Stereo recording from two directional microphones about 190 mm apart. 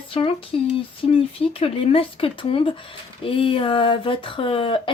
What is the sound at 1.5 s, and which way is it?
Speech, 30° left (ahead or behind).